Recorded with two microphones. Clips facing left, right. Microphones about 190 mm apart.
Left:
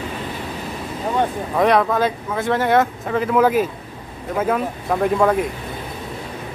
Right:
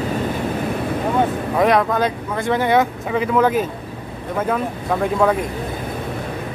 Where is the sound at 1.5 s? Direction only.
Centre (ahead or behind).